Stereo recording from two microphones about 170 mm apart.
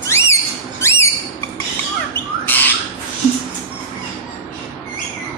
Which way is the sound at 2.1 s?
10° left (ahead or behind).